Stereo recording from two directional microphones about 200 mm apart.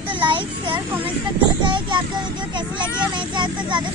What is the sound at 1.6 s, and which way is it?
Child singing, 25° right (ahead or behind).